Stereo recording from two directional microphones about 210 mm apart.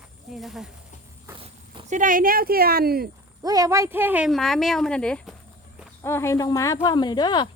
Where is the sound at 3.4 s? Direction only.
15° right (ahead or behind); by 7.5 s 20° left (ahead or behind).